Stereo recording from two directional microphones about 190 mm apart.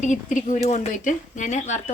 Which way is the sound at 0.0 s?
40° left (ahead or behind).